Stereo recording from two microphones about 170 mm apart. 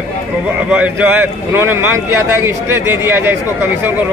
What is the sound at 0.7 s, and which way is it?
A man's voice, 10° right (ahead or behind).